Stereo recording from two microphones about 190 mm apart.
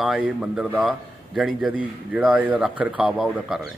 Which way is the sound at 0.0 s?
Centre (ahead or behind).